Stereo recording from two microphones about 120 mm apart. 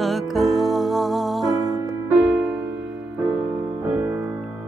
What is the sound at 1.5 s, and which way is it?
Music, 30° right (ahead or behind).